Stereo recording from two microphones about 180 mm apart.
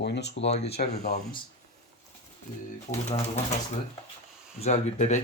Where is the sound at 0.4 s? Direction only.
35° left (ahead or behind).